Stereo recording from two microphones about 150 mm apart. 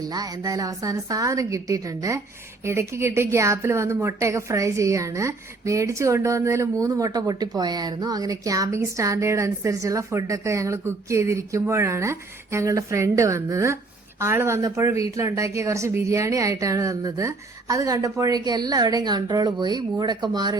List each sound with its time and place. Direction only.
0.0 s a woman's voice: 25° right (ahead or behind)